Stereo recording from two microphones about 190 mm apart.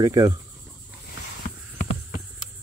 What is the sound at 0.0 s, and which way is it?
Speech, 15° right (ahead or behind).